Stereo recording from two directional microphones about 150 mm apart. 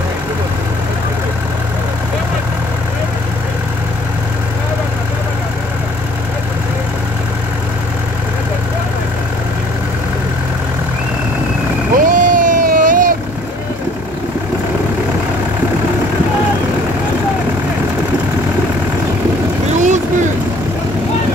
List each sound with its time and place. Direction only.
12.0 s vehicle: 60° right (ahead or behind)
19.8 s vehicle: 55° right (ahead or behind)